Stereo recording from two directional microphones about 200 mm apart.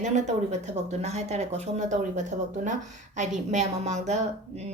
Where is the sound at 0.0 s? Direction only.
35° right (ahead or behind).